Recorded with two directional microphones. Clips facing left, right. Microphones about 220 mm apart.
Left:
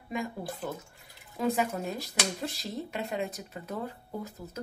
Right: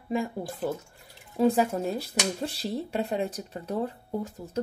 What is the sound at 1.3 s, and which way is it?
A woman's voice, 30° right (ahead or behind).